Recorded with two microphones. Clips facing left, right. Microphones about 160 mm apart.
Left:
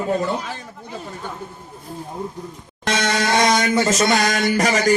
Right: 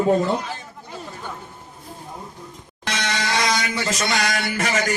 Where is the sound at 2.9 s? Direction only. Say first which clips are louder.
Left 5 dB; 45° left (ahead or behind).